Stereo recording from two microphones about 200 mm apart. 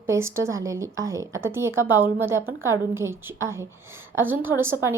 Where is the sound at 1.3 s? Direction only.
80° right.